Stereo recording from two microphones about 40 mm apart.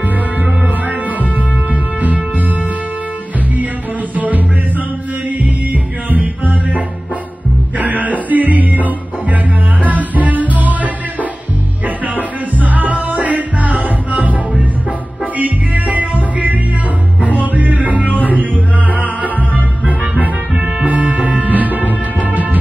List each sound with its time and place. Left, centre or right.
2.0 s music: right
5.4 s music: right
7.8 s music: right
9.8 s music: right
12.2 s music: right
15.3 s music: right
18.0 s music: left
18.9 s music: right